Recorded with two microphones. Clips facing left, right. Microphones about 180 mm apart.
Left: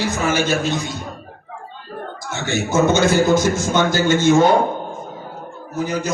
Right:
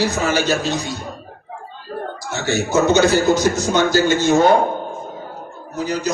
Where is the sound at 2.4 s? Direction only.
50° left (ahead or behind).